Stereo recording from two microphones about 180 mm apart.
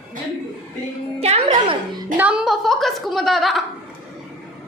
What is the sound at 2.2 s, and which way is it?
A woman's voice, 5° right (ahead or behind).